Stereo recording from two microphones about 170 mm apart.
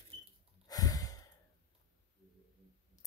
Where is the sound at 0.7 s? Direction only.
20° left (ahead or behind).